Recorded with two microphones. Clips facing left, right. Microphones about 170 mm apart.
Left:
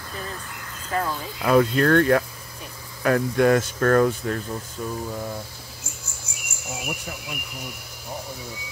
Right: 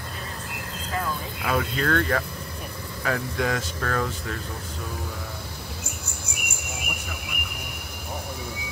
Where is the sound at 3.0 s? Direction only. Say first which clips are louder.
Left 7 dB; 55° left (ahead or behind).